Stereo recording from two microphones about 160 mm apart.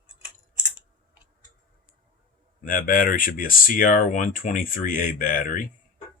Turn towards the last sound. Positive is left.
turn(degrees=60)  # may be behind; listen again after turning